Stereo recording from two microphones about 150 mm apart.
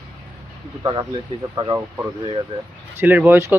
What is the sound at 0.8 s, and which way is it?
Speech, 25° right (ahead or behind).